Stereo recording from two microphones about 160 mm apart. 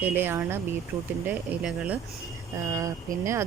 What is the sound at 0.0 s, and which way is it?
Speech, 10° right (ahead or behind).